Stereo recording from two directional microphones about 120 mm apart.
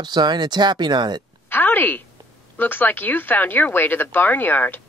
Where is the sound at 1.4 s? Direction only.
15° left (ahead or behind).